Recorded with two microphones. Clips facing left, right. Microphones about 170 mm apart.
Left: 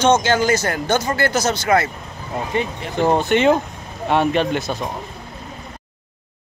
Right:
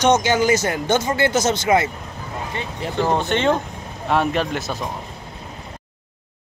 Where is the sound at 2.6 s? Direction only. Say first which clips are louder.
Left 2 dB; 15° left (ahead or behind).